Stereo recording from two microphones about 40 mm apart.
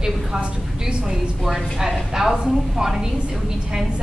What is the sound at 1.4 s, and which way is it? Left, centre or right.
A woman's voice, centre.